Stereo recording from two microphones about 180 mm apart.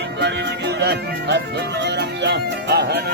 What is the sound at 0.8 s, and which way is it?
Speech, 70° right (ahead or behind).